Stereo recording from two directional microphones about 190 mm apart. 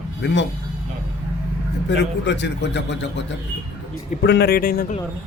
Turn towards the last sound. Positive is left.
turn(degrees=50)  # may be behind; listen again after turning